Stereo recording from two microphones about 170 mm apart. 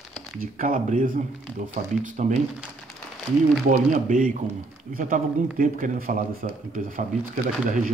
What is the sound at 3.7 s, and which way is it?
Speech, 50° right (ahead or behind).